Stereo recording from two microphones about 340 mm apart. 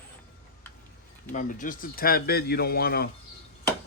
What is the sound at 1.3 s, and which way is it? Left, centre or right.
Speech, left.